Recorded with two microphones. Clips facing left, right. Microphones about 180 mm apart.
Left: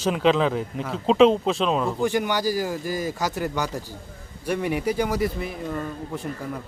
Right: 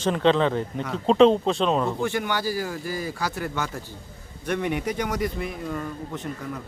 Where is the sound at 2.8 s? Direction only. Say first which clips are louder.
Left 3 dB; 45° left (ahead or behind).